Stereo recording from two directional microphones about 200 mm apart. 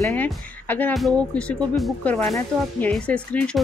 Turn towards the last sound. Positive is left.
turn(degrees=5)  # may be behind; listen again after turning